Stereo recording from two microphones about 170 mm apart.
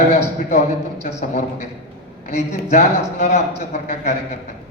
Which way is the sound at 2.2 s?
45° left (ahead or behind).